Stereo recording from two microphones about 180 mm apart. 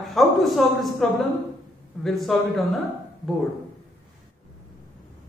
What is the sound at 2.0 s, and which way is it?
Speech, centre (ahead or behind).